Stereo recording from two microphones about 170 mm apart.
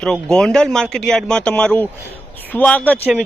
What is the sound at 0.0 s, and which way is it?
Speech, 5° left (ahead or behind).